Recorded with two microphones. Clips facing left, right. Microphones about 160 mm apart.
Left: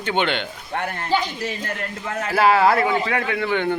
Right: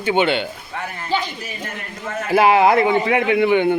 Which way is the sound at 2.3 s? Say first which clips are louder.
Right 3 dB; 15° right (ahead or behind).